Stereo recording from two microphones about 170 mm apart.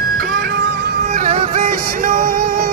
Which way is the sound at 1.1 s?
45° right (ahead or behind).